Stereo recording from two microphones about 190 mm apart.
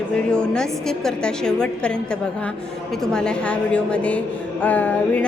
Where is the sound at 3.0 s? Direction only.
5° left (ahead or behind).